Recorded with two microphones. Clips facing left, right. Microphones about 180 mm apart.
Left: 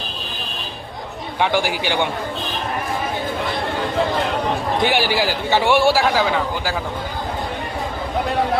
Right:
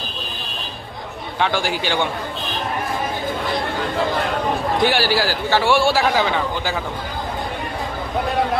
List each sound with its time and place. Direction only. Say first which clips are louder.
1.4 s a man's voice: left 1 dB; 15° left (ahead or behind)
4.8 s a man's voice: even; 20° left (ahead or behind)
6.0 s a man's voice: even; 5° left (ahead or behind)